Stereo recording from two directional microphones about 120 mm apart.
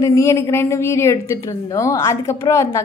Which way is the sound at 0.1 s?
25° left (ahead or behind).